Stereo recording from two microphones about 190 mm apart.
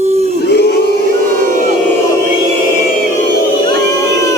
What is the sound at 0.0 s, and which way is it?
Crowd, 35° right (ahead or behind).